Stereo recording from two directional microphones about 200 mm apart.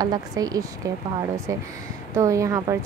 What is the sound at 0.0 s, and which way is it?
Speech, 20° right (ahead or behind).